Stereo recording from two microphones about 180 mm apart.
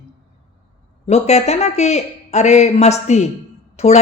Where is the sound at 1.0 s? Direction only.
35° left (ahead or behind).